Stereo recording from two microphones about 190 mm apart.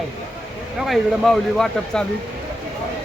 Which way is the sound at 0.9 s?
Centre (ahead or behind).